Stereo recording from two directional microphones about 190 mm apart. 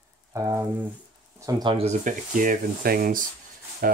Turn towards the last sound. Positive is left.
turn(degrees=-50)  # may be behind; listen again after turning